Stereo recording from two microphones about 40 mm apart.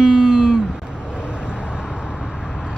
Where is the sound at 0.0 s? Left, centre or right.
Centre.